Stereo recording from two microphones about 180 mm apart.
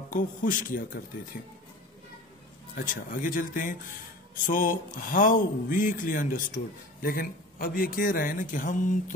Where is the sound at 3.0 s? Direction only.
50° left (ahead or behind).